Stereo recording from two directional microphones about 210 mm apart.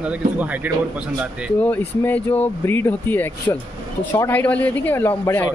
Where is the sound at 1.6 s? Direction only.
10° left (ahead or behind).